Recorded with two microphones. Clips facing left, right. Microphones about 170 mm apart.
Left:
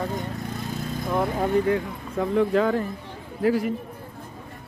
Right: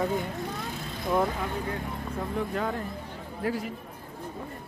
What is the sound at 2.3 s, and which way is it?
Speech, 90° left.